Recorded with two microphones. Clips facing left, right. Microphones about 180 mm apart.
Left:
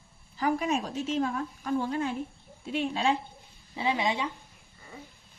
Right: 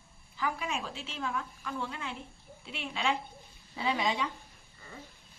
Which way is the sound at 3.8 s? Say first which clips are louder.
Left 2 dB; 20° left (ahead or behind).